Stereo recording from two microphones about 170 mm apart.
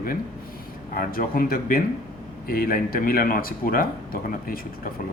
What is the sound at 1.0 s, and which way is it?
A man's voice, 55° left (ahead or behind).